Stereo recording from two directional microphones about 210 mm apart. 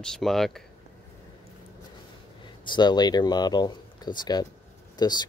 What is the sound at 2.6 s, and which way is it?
Speech, 20° left (ahead or behind).